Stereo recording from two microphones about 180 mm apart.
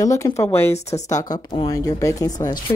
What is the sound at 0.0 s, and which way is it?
Speech, 20° left (ahead or behind).